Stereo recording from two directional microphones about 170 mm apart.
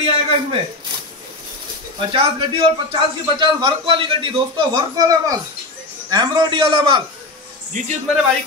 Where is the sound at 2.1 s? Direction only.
30° right (ahead or behind).